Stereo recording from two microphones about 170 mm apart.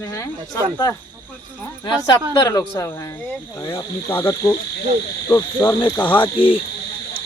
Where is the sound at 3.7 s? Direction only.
15° left (ahead or behind).